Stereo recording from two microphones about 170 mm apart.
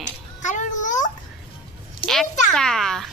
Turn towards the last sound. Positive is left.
turn(degrees=0)  # may be behind; listen again after turning